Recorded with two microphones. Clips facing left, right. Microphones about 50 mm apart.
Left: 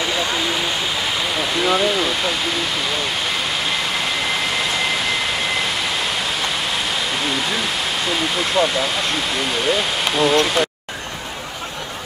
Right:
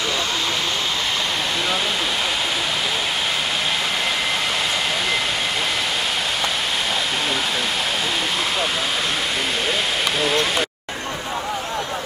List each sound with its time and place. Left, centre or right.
10.1 s speech: centre